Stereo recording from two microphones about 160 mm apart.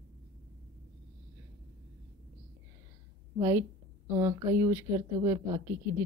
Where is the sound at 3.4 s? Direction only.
15° right (ahead or behind).